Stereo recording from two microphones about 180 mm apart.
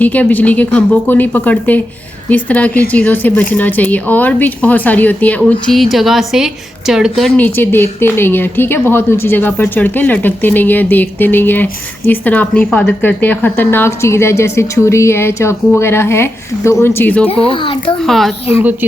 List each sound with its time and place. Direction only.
0.0 s speech: 10° left (ahead or behind)
17.5 s a child's voice: 30° left (ahead or behind)
18.0 s a woman's voice: centre (ahead or behind)